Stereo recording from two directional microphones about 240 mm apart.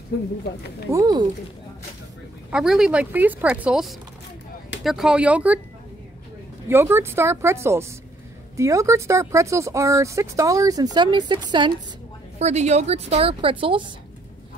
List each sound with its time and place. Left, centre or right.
0.9 s speech: centre
2.5 s a woman's voice: centre
6.7 s a woman's voice: centre